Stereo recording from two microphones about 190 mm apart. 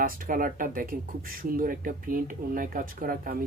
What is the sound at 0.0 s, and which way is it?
Speech, 45° right (ahead or behind).